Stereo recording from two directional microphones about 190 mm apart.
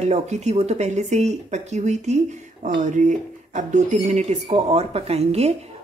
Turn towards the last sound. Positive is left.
turn(degrees=-35)  # may be behind; listen again after turning